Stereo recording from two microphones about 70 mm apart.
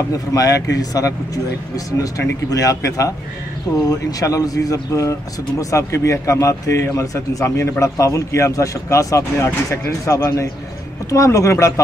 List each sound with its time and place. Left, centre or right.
0.1 s speech: left